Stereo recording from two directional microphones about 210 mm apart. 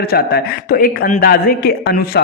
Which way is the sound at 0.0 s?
50° left (ahead or behind).